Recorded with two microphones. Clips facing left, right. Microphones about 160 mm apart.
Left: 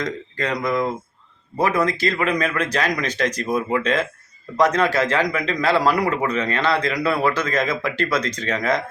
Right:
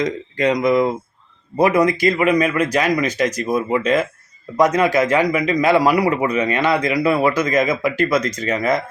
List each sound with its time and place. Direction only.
0.0 s a man's voice: 20° right (ahead or behind)